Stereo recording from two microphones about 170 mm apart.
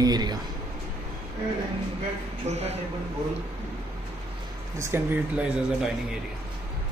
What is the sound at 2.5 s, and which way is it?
Speech, 40° right (ahead or behind).